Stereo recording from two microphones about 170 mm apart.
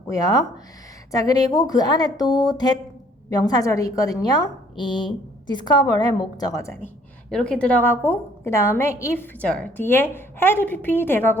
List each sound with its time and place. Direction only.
0.1 s a woman's voice: 20° left (ahead or behind)
7.3 s a woman's voice: 5° left (ahead or behind)